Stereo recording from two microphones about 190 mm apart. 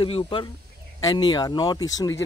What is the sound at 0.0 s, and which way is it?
Speech, 25° left (ahead or behind).